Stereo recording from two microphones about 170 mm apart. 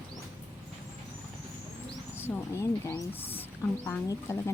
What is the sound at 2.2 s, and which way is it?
Speech, 15° left (ahead or behind).